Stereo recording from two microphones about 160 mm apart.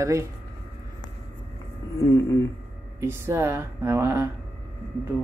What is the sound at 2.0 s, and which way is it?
Speech, 15° left (ahead or behind).